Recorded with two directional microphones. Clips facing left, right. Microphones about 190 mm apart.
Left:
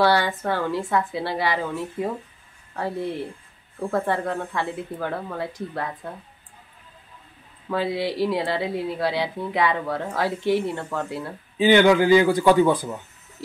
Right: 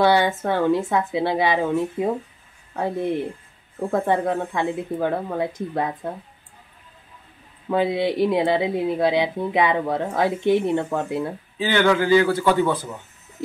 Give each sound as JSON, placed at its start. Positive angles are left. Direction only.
{"t": 0.0, "sound": "speech", "side_deg": -20}
{"t": 7.7, "sound": "speech", "side_deg": -20}
{"t": 11.5, "sound": "a man's voice", "side_deg": 15}